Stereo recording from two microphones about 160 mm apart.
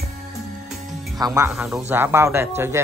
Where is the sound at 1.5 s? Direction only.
5° right (ahead or behind).